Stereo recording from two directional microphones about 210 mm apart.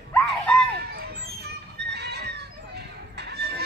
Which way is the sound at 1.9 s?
50° right (ahead or behind).